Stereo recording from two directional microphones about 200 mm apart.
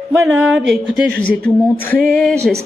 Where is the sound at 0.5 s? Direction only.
Centre (ahead or behind).